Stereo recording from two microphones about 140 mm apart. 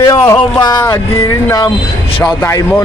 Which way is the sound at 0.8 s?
20° left (ahead or behind).